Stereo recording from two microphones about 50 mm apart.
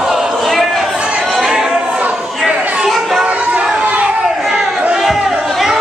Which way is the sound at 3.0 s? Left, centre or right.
Centre.